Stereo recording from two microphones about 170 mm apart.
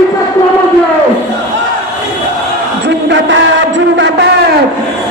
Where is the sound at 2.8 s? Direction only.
90° right.